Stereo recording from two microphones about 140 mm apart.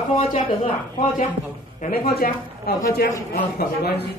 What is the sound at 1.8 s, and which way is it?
A woman's voice, 90° left.